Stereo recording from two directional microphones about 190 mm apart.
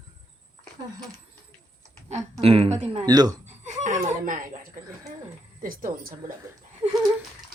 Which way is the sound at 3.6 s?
40° right (ahead or behind).